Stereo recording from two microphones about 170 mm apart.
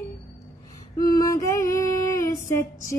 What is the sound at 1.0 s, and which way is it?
Female singing, 20° left (ahead or behind).